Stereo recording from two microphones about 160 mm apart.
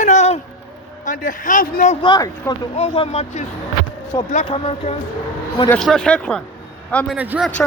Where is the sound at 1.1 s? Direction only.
55° left (ahead or behind).